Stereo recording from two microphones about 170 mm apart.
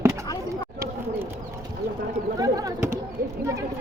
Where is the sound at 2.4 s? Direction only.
20° right (ahead or behind).